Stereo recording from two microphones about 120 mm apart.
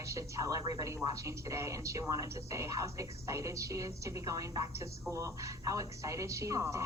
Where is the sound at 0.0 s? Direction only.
25° right (ahead or behind).